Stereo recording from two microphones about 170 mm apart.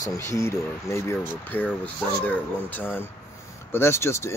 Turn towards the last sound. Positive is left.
turn(degrees=15)  # may be behind; listen again after turning